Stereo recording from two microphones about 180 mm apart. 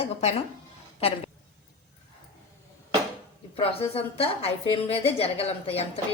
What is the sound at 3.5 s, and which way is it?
A woman's voice, 30° left (ahead or behind).